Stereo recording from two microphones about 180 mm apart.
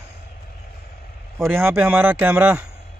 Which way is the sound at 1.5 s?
10° right (ahead or behind).